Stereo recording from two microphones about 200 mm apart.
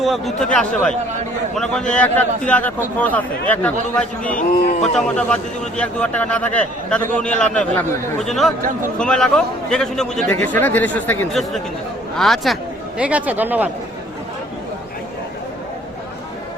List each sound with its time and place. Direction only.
0.0 s a man's voice: centre (ahead or behind)
4.4 s a man's voice: 45° left (ahead or behind)
4.8 s a man's voice: 5° left (ahead or behind)